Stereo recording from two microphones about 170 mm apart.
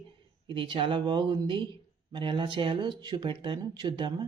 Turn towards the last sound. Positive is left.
turn(degrees=-25)  # may be behind; listen again after turning